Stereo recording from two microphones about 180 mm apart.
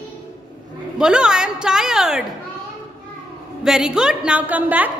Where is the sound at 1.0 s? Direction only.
5° right (ahead or behind).